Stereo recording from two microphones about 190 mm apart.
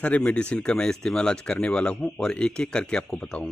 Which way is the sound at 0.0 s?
5° left (ahead or behind).